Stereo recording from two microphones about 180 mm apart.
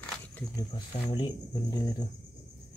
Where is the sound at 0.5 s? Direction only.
25° left (ahead or behind).